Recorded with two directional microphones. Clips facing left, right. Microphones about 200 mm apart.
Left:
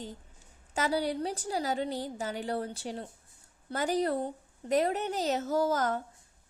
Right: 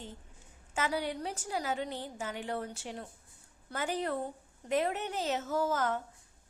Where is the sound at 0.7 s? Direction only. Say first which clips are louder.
Left 4 dB; 35° left (ahead or behind).